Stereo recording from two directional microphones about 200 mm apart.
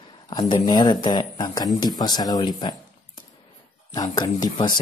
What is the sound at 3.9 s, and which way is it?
Speech, 20° left (ahead or behind).